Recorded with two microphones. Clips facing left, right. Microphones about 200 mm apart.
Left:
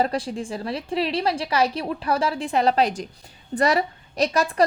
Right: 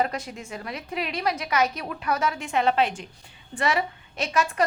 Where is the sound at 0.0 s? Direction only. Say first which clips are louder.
Left 4 dB; 30° left (ahead or behind).